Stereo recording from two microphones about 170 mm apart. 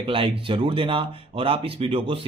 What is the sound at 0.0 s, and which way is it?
Speech, 30° right (ahead or behind).